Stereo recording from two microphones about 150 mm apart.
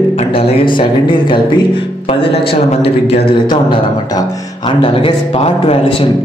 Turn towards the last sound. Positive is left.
turn(degrees=35)  # may be behind; listen again after turning